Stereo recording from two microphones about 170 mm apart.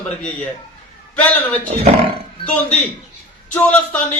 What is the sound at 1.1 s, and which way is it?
Speech, 10° left (ahead or behind).